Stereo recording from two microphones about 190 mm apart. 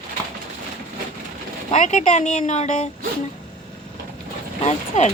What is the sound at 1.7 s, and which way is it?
A woman's voice, 40° left (ahead or behind).